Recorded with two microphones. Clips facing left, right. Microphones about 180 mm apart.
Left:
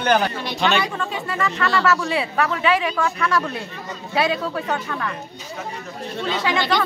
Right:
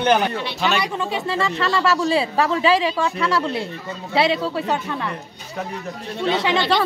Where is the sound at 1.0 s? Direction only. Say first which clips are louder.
Right 2 dB; 25° right (ahead or behind).